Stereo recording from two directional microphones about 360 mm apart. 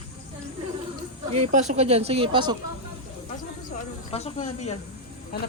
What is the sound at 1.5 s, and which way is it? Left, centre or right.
Speech, centre.